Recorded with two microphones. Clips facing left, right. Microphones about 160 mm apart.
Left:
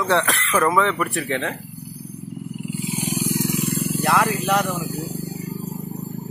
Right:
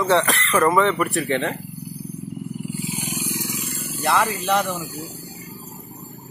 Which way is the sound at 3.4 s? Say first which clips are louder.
Left 8 dB; 55° left (ahead or behind).